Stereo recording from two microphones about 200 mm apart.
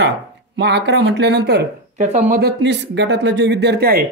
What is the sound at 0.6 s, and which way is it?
Speech, 60° right (ahead or behind).